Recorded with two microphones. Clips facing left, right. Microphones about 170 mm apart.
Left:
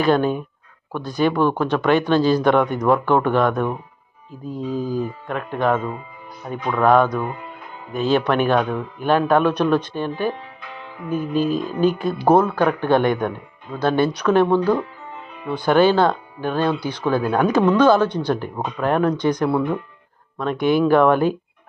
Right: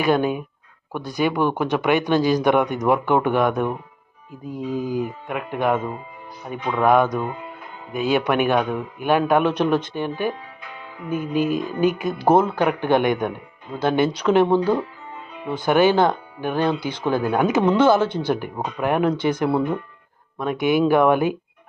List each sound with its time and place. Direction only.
0.0 s speech: 10° right (ahead or behind)
20.4 s speech: 15° right (ahead or behind)